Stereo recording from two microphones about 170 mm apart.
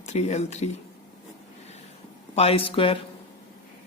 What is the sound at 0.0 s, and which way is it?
Speech, 40° left (ahead or behind).